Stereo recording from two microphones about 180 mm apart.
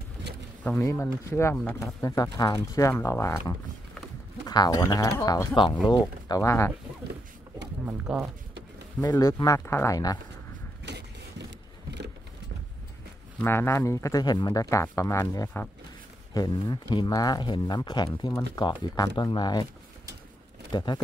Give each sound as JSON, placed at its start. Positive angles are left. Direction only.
{"t": 0.7, "sound": "speech", "side_deg": 15}
{"t": 4.5, "sound": "speech", "side_deg": 20}
{"t": 7.8, "sound": "speech", "side_deg": -5}
{"t": 9.0, "sound": "speech", "side_deg": 20}
{"t": 10.9, "sound": "a sound", "side_deg": -70}
{"t": 13.4, "sound": "speech", "side_deg": 15}
{"t": 20.7, "sound": "speech", "side_deg": 25}